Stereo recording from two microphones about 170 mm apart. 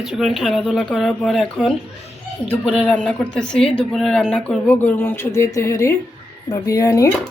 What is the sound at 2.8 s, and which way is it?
Speech, 5° left (ahead or behind).